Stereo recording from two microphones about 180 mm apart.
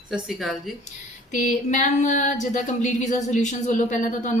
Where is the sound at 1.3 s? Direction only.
45° left (ahead or behind).